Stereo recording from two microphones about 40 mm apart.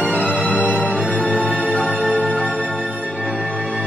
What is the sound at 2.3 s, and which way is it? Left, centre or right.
Music, left.